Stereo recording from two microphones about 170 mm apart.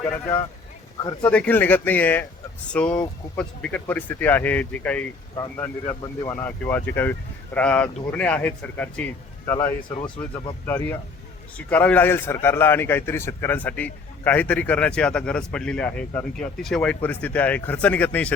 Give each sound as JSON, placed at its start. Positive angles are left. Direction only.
{"t": 0.0, "sound": "a man's voice", "side_deg": 15}